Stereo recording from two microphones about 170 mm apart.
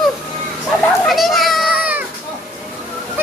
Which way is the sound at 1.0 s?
Centre (ahead or behind).